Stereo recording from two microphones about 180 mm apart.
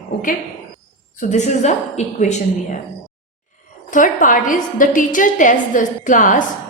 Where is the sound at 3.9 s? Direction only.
45° left (ahead or behind).